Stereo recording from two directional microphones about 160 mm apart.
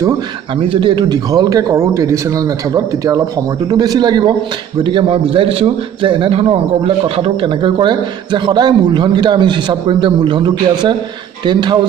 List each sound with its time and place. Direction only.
0.6 s a man's voice: 30° right (ahead or behind)